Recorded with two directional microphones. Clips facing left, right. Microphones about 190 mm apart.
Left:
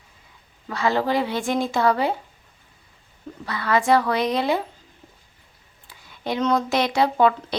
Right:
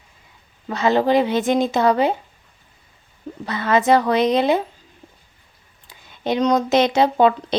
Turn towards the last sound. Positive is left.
turn(degrees=-20)  # may be behind; listen again after turning